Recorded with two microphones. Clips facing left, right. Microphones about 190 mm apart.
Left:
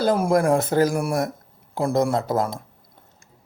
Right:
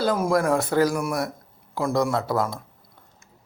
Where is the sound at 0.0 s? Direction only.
20° left (ahead or behind).